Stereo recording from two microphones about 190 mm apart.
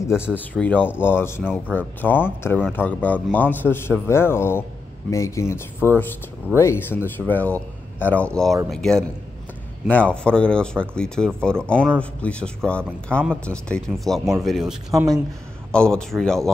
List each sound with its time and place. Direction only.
0.0 s speech: 15° left (ahead or behind)
14.9 s speech: 20° right (ahead or behind)
15.7 s speech: 5° left (ahead or behind)